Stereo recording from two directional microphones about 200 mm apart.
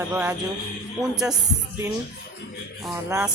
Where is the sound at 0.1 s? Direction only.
10° right (ahead or behind).